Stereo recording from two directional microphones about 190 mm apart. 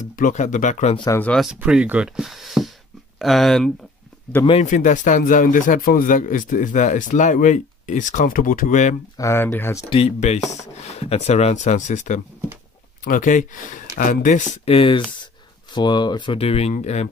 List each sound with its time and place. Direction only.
0.1 s speech: 45° left (ahead or behind)
0.9 s speech: 20° left (ahead or behind)
1.2 s speech: centre (ahead or behind)
4.5 s speech: 40° left (ahead or behind)
9.1 s speech: 15° left (ahead or behind)
9.8 s speech: 30° left (ahead or behind)